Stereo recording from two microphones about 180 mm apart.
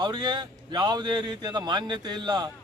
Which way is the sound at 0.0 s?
25° right (ahead or behind).